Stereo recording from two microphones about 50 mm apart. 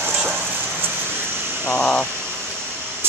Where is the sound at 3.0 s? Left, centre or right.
Right.